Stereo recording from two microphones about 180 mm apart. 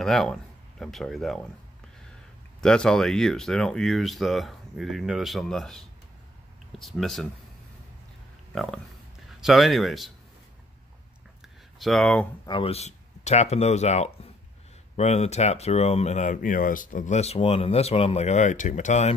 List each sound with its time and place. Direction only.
0.0 s speech: centre (ahead or behind)
2.6 s speech: 5° left (ahead or behind)
9.4 s speech: centre (ahead or behind)
11.8 s speech: centre (ahead or behind)
12.4 s speech: 30° left (ahead or behind)